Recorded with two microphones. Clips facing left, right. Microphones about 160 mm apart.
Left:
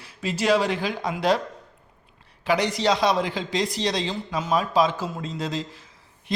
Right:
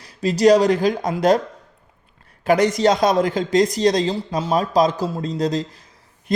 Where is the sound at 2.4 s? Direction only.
45° right (ahead or behind).